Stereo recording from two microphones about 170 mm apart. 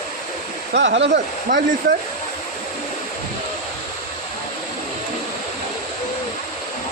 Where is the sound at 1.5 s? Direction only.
50° right (ahead or behind).